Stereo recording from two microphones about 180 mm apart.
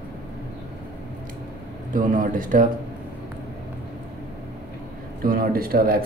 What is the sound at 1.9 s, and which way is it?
Speech, 50° right (ahead or behind).